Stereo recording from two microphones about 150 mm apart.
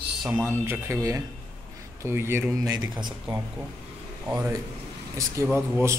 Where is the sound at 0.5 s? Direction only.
15° right (ahead or behind).